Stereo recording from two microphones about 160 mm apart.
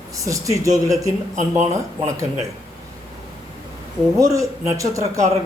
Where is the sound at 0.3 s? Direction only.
20° right (ahead or behind).